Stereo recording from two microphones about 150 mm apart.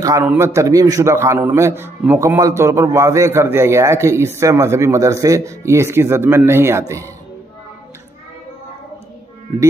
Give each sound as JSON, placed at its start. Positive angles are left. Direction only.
{"t": 0.0, "sound": "a man's voice", "side_deg": -20}